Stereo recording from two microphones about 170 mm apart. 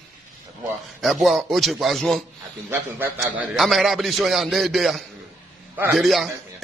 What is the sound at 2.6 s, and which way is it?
Speech, 15° right (ahead or behind).